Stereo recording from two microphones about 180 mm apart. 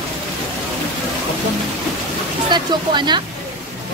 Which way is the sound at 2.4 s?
25° right (ahead or behind).